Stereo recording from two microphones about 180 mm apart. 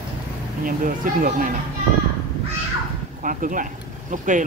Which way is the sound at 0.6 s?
50° right (ahead or behind).